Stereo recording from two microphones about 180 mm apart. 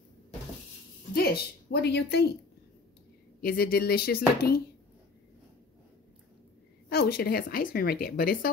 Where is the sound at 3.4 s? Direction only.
55° left (ahead or behind).